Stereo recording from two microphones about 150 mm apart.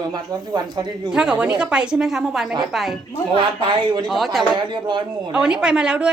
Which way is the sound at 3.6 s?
30° right (ahead or behind).